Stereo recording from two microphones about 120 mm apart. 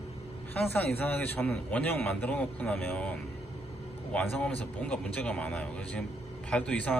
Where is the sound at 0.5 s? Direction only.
15° left (ahead or behind).